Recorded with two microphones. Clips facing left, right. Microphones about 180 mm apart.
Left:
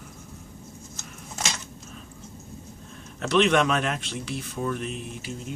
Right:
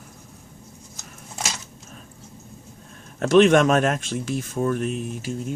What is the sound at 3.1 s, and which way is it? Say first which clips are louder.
Speech: right 6 dB; 45° right (ahead or behind).